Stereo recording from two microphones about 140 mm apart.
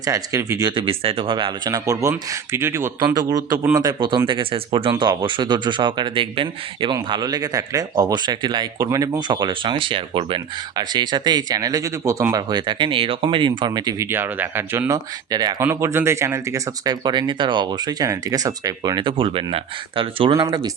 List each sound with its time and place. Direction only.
0.0 s speech: 20° right (ahead or behind)
0.8 s speech: 40° right (ahead or behind)
14.1 s speech: 15° right (ahead or behind); by 20.7 s 35° right (ahead or behind)